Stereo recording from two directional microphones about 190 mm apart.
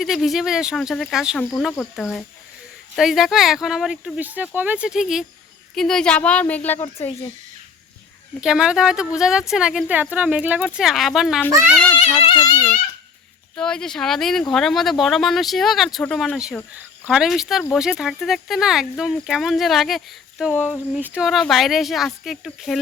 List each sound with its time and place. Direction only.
0.0 s speech: centre (ahead or behind)
1.4 s speech: 10° left (ahead or behind)
8.4 s speech: 5° right (ahead or behind)
11.9 s speech: 30° left (ahead or behind)
13.6 s speech: 5° left (ahead or behind)
20.9 s speech: 5° right (ahead or behind)